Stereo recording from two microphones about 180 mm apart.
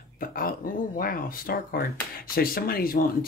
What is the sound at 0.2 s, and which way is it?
Speech, 55° left (ahead or behind).